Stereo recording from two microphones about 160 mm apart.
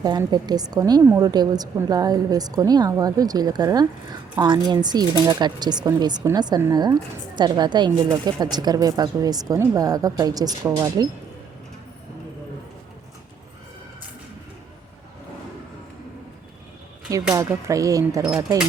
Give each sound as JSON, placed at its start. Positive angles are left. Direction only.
{"t": 0.0, "sound": "a woman's voice", "side_deg": -25}
{"t": 17.3, "sound": "a woman's voice", "side_deg": -20}